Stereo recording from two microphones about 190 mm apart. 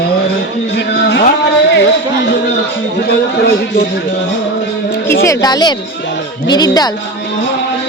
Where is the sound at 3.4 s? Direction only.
60° left (ahead or behind).